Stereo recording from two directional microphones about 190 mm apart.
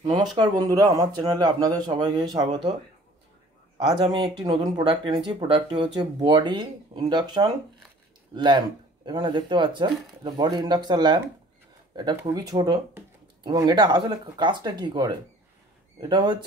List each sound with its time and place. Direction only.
0.0 s speech: 20° right (ahead or behind)
3.8 s speech: 25° right (ahead or behind)